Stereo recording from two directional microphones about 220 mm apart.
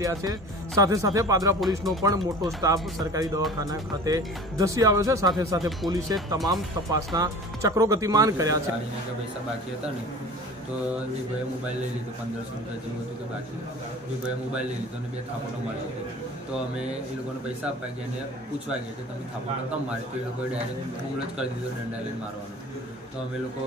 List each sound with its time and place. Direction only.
0.0 s speech: 15° right (ahead or behind)